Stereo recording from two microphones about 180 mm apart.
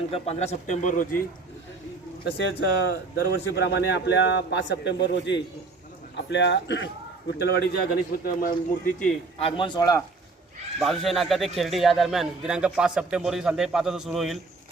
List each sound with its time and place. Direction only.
0.1 s speech: 35° left (ahead or behind)
2.2 s a man's voice: 65° left (ahead or behind)
7.3 s a man's voice: 65° left (ahead or behind)
9.4 s a man's voice: 30° left (ahead or behind)
10.8 s speech: centre (ahead or behind)